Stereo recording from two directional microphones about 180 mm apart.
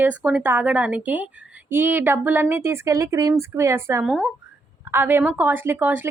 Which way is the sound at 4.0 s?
Centre (ahead or behind).